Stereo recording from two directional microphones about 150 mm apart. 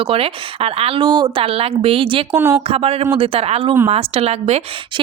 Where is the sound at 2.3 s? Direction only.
15° right (ahead or behind).